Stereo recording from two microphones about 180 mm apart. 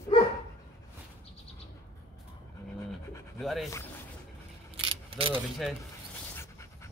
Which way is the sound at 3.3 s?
Centre (ahead or behind).